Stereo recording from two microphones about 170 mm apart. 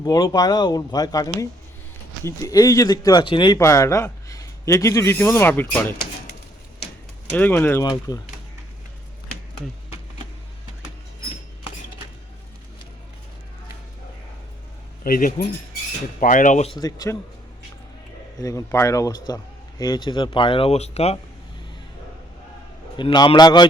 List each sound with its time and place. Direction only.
0.0 s speech: 20° left (ahead or behind)
7.3 s speech: 10° left (ahead or behind)
15.0 s speech: 60° left (ahead or behind)
16.8 s speech: 20° left (ahead or behind)
18.3 s speech: 20° left (ahead or behind); by 21.2 s 40° left (ahead or behind)
23.0 s speech: 25° left (ahead or behind)